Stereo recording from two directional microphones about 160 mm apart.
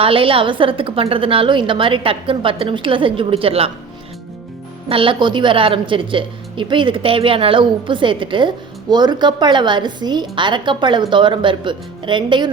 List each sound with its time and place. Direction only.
0.0 s a woman's voice: 35° right (ahead or behind)
4.9 s a woman's voice: 35° right (ahead or behind)